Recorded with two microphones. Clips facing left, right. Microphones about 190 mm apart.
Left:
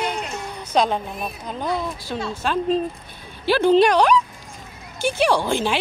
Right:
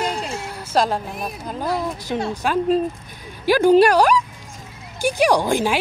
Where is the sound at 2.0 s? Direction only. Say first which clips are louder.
Right 3 dB; 20° right (ahead or behind).